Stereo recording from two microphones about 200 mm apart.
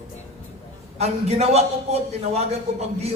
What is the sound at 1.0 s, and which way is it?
Music, 30° right (ahead or behind).